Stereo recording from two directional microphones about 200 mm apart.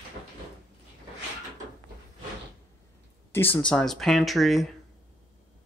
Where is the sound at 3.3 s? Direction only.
10° left (ahead or behind).